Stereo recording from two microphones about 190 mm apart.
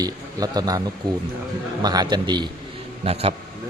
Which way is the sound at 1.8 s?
20° right (ahead or behind).